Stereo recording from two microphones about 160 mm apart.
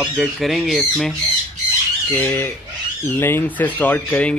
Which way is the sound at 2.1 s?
15° left (ahead or behind).